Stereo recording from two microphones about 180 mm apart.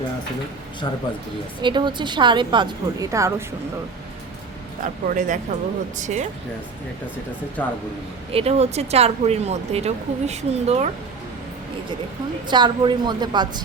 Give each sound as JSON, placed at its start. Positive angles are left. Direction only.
{"t": 1.6, "sound": "a woman's voice", "side_deg": -25}
{"t": 4.8, "sound": "speech", "side_deg": -45}
{"t": 7.6, "sound": "speech", "side_deg": 10}
{"t": 8.3, "sound": "speech", "side_deg": -35}
{"t": 12.5, "sound": "a woman's voice", "side_deg": -25}